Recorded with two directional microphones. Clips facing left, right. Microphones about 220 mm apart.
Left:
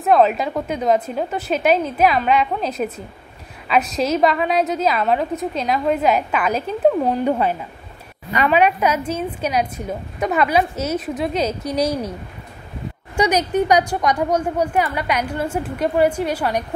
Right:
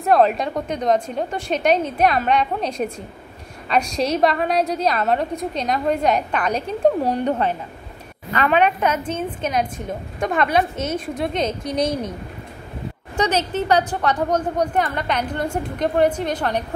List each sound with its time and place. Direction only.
0.0 s a woman's voice: centre (ahead or behind)
13.2 s a woman's voice: 15° left (ahead or behind)